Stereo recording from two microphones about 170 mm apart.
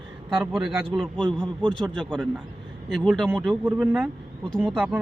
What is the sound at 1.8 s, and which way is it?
Speech, centre (ahead or behind).